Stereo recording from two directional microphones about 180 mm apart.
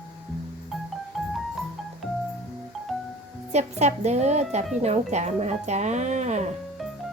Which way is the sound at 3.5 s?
40° right (ahead or behind).